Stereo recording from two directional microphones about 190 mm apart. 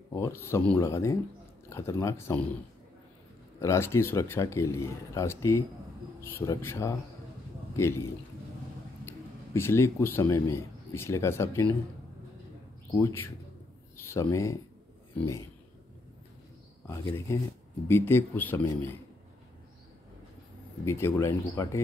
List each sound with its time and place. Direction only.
0.1 s speech: 15° left (ahead or behind)
3.6 s a man's voice: 15° left (ahead or behind)
9.0 s speech: 15° left (ahead or behind)
12.9 s speech: 15° left (ahead or behind)
16.8 s speech: 15° left (ahead or behind)
20.8 s speech: 15° left (ahead or behind)